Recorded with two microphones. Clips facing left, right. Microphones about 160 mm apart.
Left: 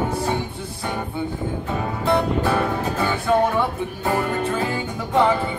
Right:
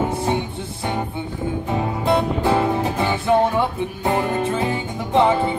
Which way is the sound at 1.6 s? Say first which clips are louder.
Right 2 dB; 20° right (ahead or behind).